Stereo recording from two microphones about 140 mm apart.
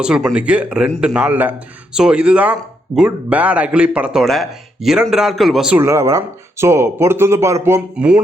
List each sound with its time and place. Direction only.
0.0 s a man's voice: 5° right (ahead or behind)
5.8 s speech: 20° right (ahead or behind)